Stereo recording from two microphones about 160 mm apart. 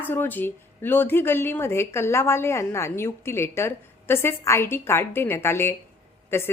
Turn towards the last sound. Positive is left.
turn(degrees=15)  # may be behind; listen again after turning